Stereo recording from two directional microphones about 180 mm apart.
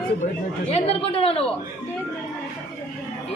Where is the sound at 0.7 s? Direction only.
35° left (ahead or behind).